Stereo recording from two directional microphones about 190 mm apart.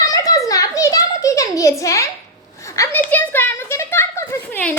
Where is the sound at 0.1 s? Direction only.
20° left (ahead or behind).